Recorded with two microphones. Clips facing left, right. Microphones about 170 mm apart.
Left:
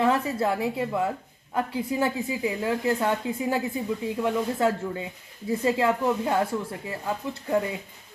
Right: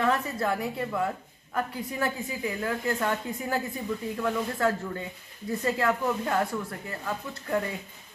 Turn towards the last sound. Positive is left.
turn(degrees=20)  # may be behind; listen again after turning